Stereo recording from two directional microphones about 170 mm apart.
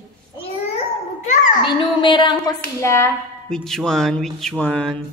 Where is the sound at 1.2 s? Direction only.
45° left (ahead or behind).